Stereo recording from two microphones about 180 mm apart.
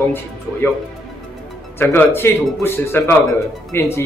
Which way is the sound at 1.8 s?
10° left (ahead or behind).